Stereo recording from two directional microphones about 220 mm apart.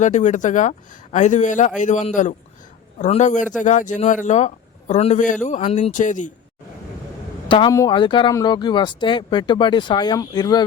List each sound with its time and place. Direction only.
0.0 s a man's voice: 35° left (ahead or behind)
7.4 s a man's voice: 20° left (ahead or behind)